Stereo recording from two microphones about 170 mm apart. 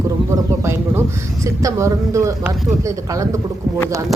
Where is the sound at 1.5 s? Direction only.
20° right (ahead or behind).